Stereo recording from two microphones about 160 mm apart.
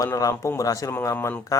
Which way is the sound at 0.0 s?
20° left (ahead or behind).